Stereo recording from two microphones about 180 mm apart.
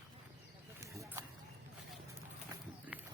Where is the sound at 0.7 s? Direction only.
15° right (ahead or behind).